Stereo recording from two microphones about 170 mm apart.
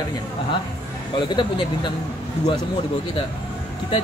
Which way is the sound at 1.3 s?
25° left (ahead or behind).